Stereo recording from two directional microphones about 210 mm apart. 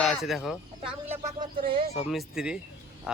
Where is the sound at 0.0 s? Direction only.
Centre (ahead or behind).